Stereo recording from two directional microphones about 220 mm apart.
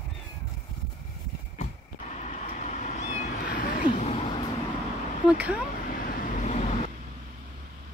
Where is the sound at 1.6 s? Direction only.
30° left (ahead or behind).